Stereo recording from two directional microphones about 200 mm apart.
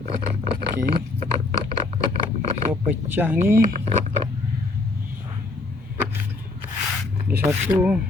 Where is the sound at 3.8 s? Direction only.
25° right (ahead or behind).